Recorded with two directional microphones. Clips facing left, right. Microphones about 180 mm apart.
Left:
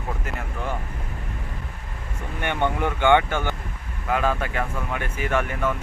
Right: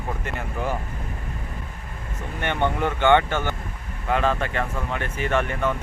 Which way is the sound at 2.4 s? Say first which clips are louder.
Even; 10° left (ahead or behind).